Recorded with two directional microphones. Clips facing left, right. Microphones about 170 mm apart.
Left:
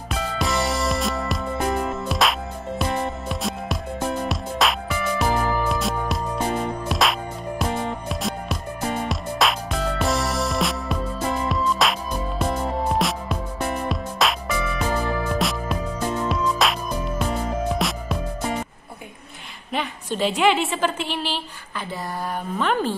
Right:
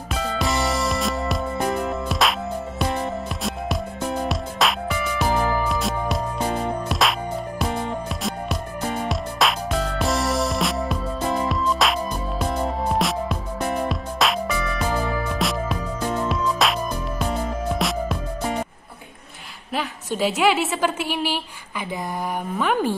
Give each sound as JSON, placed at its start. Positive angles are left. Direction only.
{"t": 0.1, "sound": "music", "side_deg": 0}
{"t": 4.3, "sound": "music", "side_deg": 0}
{"t": 17.7, "sound": "music", "side_deg": 0}
{"t": 19.7, "sound": "a woman's voice", "side_deg": -5}
{"t": 22.6, "sound": "speech", "side_deg": -10}